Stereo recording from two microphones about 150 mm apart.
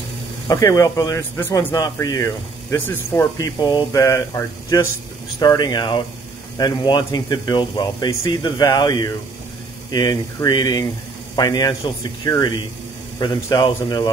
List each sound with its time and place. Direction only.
0.5 s speech: 20° left (ahead or behind)